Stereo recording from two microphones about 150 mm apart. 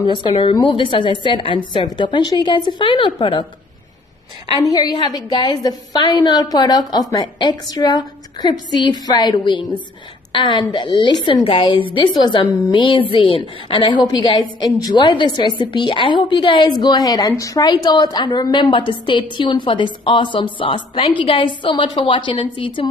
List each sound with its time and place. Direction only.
0.0 s a woman's voice: 35° left (ahead or behind)
4.6 s a woman's voice: 25° left (ahead or behind)